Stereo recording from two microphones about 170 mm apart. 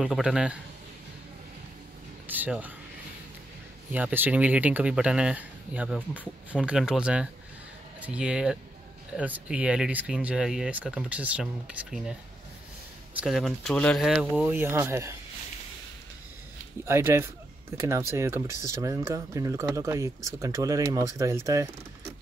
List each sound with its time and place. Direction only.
0.0 s speech: 5° right (ahead or behind)
2.2 s a sound: 10° right (ahead or behind)
3.9 s speech: 10° right (ahead or behind)
16.8 s speech: 15° right (ahead or behind)